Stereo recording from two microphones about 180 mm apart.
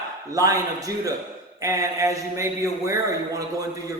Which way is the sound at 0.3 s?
20° right (ahead or behind).